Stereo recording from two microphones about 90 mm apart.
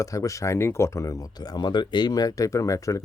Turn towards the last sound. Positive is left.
turn(degrees=40)  # may be behind; listen again after turning